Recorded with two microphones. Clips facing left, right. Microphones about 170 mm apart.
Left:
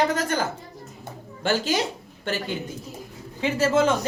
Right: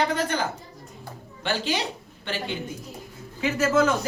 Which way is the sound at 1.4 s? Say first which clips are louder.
Left 3 dB; 45° left (ahead or behind).